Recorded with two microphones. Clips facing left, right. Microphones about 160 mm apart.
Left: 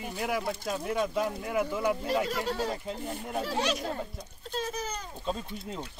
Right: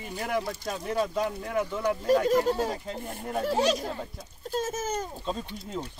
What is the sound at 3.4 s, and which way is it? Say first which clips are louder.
Speech: right 6 dB; 45° right (ahead or behind).